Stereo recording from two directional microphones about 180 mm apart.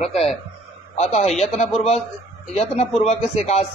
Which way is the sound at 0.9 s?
40° left (ahead or behind).